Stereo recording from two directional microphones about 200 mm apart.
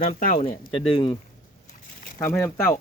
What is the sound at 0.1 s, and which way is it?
Speech, 40° left (ahead or behind).